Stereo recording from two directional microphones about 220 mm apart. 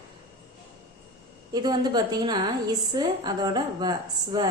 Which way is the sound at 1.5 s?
20° right (ahead or behind).